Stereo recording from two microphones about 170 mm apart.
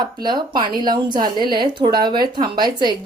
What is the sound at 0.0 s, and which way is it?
A woman's voice, 25° right (ahead or behind).